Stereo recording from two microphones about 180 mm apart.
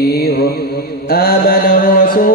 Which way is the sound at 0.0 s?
60° left (ahead or behind).